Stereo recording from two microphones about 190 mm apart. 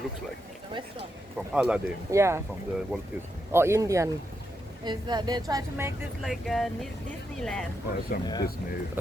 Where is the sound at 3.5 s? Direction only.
15° right (ahead or behind).